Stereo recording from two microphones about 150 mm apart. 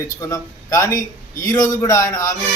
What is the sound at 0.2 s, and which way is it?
A man's voice, 25° left (ahead or behind).